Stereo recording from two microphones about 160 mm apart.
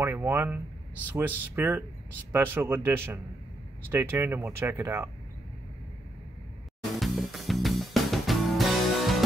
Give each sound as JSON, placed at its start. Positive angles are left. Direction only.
{"t": 0.0, "sound": "speech", "side_deg": -15}
{"t": 7.0, "sound": "music", "side_deg": 0}